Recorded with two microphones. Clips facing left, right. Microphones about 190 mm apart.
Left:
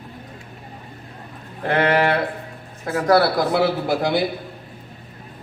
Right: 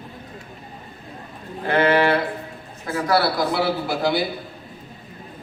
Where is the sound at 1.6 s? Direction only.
45° left (ahead or behind).